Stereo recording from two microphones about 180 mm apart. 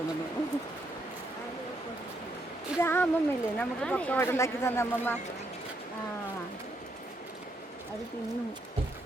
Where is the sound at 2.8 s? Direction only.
10° left (ahead or behind).